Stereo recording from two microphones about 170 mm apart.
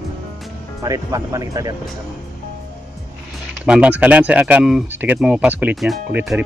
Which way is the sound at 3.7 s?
10° right (ahead or behind).